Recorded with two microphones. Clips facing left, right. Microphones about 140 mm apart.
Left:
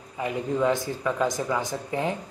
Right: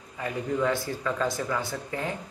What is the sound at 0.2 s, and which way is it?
Speech, 20° left (ahead or behind).